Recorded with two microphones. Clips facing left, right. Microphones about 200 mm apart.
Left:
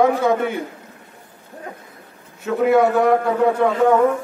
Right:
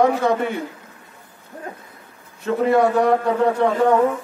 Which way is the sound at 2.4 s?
Centre (ahead or behind).